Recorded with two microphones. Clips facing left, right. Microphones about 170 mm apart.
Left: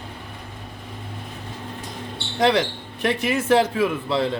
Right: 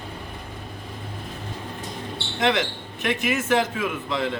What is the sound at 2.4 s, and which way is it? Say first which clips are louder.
Speech: left 4 dB; 35° left (ahead or behind).